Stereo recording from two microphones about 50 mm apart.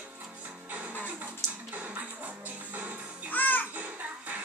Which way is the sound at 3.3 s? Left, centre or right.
Left.